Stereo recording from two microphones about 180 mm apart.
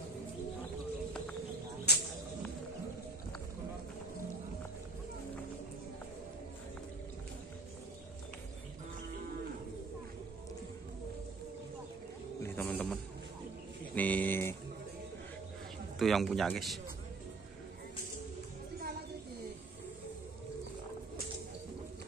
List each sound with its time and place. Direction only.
1.9 s snake: 65° left (ahead or behind)
12.4 s a sound: 10° left (ahead or behind)
16.0 s a man's voice: centre (ahead or behind)